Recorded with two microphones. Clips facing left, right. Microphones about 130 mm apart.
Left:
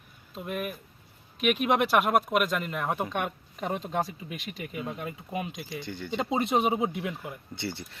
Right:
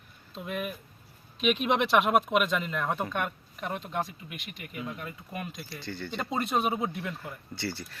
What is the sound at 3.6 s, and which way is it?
Speech, 30° left (ahead or behind).